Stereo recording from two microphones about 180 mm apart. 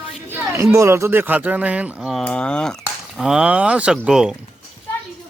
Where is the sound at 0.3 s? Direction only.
15° right (ahead or behind).